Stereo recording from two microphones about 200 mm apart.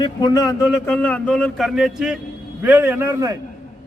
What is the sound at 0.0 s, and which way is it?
A man's voice, 20° left (ahead or behind).